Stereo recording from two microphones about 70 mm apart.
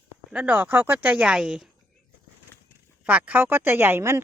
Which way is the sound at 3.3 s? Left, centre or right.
Right.